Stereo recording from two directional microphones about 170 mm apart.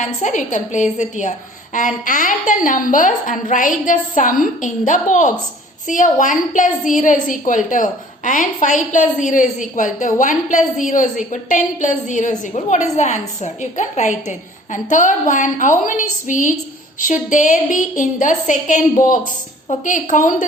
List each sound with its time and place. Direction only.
0.0 s a woman's voice: 50° left (ahead or behind)